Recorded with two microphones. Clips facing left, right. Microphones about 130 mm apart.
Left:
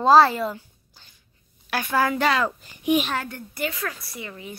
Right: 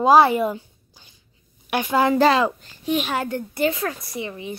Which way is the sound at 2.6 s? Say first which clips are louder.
Left 2 dB; 15° left (ahead or behind).